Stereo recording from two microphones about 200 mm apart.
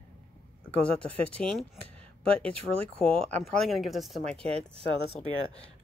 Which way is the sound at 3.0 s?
5° left (ahead or behind).